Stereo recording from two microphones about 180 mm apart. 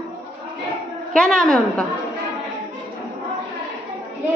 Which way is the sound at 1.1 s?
5° left (ahead or behind).